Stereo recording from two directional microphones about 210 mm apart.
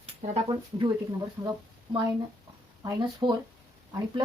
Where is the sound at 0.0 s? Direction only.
20° right (ahead or behind).